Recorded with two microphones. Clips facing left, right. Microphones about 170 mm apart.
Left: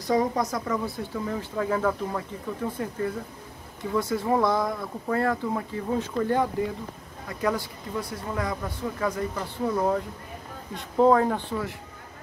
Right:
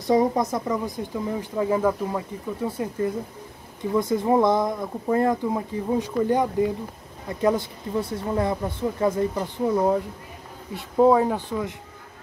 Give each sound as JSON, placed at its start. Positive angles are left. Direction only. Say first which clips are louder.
{"t": 0.0, "sound": "speech", "louder": "right 4 dB", "side_deg": -25}